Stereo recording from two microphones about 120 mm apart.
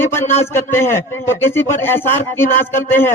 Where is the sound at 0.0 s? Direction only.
20° left (ahead or behind).